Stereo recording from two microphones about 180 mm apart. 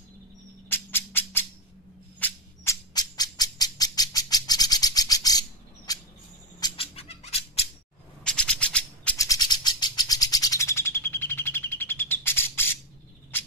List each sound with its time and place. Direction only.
0.7 s music: 10° left (ahead or behind)
2.1 s bird: 10° left (ahead or behind)
5.9 s a sound: 20° left (ahead or behind)
6.6 s bird: 30° left (ahead or behind)
8.2 s a sound: 5° left (ahead or behind)
9.2 s bird: 20° left (ahead or behind)